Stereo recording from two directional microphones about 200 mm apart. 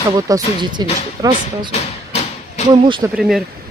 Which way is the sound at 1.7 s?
35° left (ahead or behind).